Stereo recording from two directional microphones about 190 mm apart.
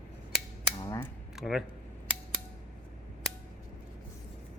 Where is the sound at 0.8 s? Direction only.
20° left (ahead or behind).